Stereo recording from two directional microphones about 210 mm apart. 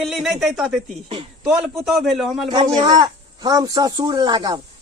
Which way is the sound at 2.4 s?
20° right (ahead or behind).